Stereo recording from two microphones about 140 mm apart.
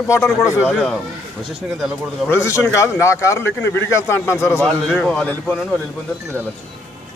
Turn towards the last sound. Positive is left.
turn(degrees=10)  # may be behind; listen again after turning